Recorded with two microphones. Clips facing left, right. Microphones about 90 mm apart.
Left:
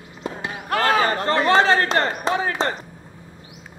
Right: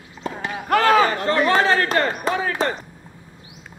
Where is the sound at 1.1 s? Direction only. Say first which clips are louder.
Left 1 dB; 35° left (ahead or behind).